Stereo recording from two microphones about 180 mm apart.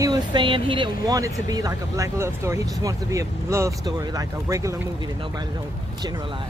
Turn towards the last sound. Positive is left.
turn(degrees=-15)  # may be behind; listen again after turning